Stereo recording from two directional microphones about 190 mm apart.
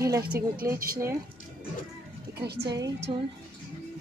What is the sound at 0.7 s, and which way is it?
Speech, 50° right (ahead or behind).